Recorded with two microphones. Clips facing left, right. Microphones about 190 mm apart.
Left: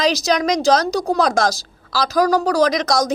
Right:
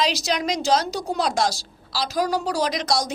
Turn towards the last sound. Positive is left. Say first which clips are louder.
# left 7 dB
turn(degrees=45)  # may be behind; listen again after turning